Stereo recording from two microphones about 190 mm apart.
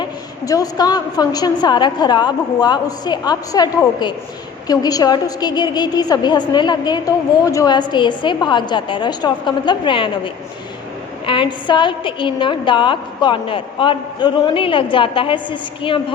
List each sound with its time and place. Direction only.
0.0 s a woman's voice: 20° left (ahead or behind)
11.3 s a woman's voice: 25° left (ahead or behind)